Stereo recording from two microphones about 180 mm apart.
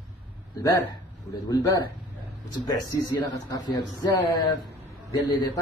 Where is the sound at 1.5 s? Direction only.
20° left (ahead or behind).